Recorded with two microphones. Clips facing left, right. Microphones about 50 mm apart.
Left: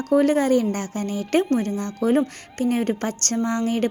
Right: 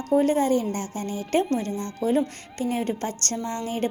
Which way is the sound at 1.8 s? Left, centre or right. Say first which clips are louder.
Left 3 dB; right.